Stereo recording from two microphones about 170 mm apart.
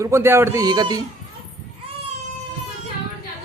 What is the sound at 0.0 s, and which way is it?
A man's voice, 15° right (ahead or behind).